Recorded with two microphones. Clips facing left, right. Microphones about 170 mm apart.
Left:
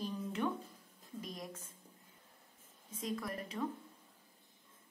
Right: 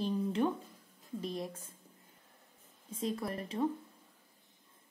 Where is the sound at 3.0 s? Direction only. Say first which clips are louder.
Right 4 dB; 30° right (ahead or behind).